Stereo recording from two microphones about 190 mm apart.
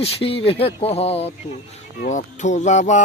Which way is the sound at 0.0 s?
30° left (ahead or behind).